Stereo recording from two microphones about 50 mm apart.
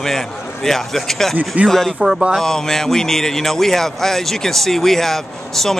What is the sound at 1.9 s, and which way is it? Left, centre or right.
Speech, centre.